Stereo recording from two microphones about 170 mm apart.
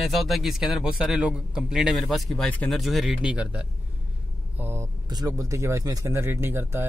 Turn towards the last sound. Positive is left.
turn(degrees=-15)  # may be behind; listen again after turning